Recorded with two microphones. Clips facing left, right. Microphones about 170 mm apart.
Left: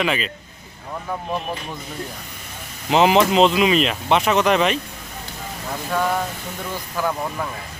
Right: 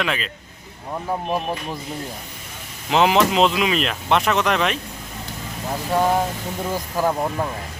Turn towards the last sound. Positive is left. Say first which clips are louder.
# right 3 dB
turn(degrees=-35)  # may be behind; listen again after turning